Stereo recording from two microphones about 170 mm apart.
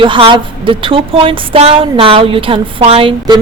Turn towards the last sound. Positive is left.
turn(degrees=-30)  # may be behind; listen again after turning